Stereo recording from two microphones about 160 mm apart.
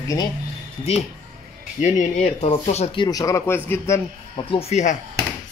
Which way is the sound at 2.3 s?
40° left (ahead or behind).